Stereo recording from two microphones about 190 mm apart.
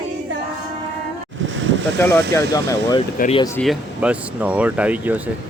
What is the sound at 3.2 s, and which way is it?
Speech, 50° left (ahead or behind).